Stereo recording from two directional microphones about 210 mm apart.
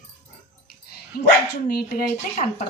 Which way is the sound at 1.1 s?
45° left (ahead or behind).